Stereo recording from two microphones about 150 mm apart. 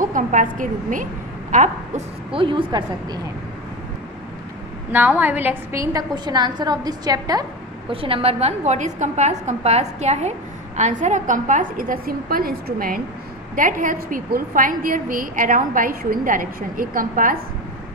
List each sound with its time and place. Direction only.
0.0 s a woman's voice: 60° right (ahead or behind)
2.3 s a woman's voice: 35° right (ahead or behind)
4.9 s a woman's voice: 10° right (ahead or behind)
7.9 s a woman's voice: 40° right (ahead or behind); by 17.4 s 65° right (ahead or behind)